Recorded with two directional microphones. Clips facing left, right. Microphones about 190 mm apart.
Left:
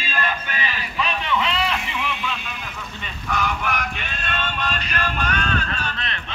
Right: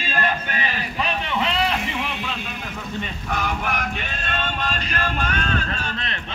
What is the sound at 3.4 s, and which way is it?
Music, 40° right (ahead or behind).